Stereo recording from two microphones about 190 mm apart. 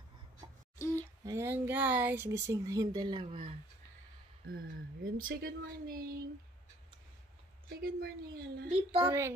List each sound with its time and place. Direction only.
0.7 s a sound: 15° left (ahead or behind)
1.2 s speech: 15° right (ahead or behind)
5.1 s speech: 50° right (ahead or behind)
7.7 s speech: 55° right (ahead or behind)
8.6 s speech: 30° right (ahead or behind)